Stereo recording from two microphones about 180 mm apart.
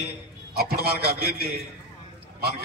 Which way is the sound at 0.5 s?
60° right (ahead or behind).